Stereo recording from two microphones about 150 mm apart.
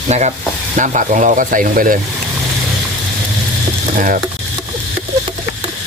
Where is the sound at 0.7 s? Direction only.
60° right (ahead or behind).